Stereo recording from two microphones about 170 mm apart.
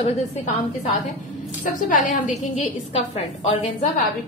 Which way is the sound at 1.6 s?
50° left (ahead or behind).